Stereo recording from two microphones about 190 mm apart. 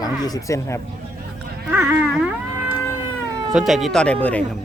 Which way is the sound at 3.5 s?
Centre (ahead or behind).